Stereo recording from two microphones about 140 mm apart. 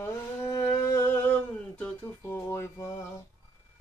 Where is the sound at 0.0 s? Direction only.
20° left (ahead or behind).